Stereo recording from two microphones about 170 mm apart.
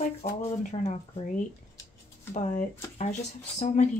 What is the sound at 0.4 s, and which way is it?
Speech, 45° left (ahead or behind).